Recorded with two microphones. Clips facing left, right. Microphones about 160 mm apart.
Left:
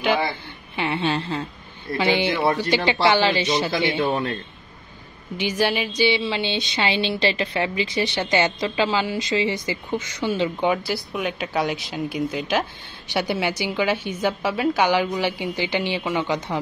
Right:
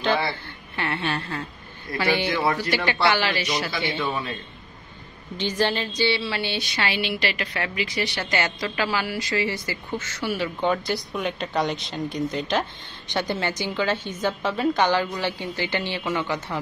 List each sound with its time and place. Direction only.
0.0 s a woman's voice: 15° left (ahead or behind)
4.0 s a man's voice: 50° left (ahead or behind)
5.4 s a woman's voice: 10° left (ahead or behind)
10.7 s a woman's voice: 5° left (ahead or behind)